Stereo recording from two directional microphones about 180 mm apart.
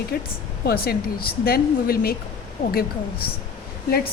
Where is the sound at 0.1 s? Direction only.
60° left (ahead or behind).